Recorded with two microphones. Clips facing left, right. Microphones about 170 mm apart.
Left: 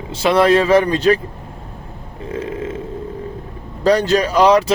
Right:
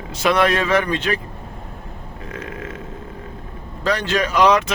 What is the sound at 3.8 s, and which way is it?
Speech, 40° left (ahead or behind).